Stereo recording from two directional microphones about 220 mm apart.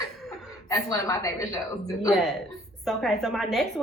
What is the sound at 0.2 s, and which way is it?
Chuckle, centre (ahead or behind).